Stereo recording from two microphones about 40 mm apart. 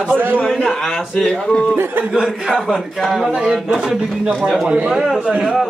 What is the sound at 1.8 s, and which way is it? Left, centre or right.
Speech, right.